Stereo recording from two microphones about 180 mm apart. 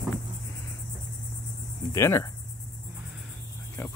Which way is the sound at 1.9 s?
15° left (ahead or behind).